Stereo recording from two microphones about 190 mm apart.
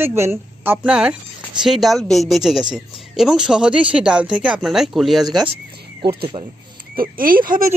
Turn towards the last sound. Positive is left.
turn(degrees=-50)  # may be behind; listen again after turning